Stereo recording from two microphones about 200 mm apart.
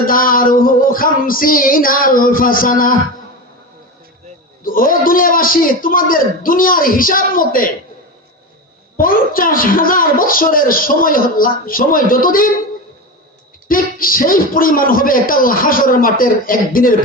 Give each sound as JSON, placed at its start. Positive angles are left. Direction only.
{"t": 0.0, "sound": "a child's voice", "side_deg": 45}
{"t": 4.6, "sound": "a child's voice", "side_deg": 45}
{"t": 9.0, "sound": "a child's voice", "side_deg": 45}
{"t": 13.7, "sound": "a child's voice", "side_deg": 45}